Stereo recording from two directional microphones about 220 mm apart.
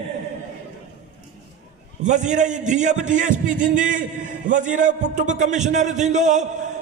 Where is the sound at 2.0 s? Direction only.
35° right (ahead or behind).